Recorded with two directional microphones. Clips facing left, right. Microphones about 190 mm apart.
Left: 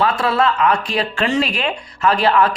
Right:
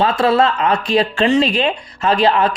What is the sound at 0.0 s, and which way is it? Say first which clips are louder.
Speech: right 3 dB; 25° right (ahead or behind).